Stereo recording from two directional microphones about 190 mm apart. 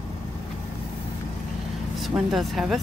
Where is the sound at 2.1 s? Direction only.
Centre (ahead or behind).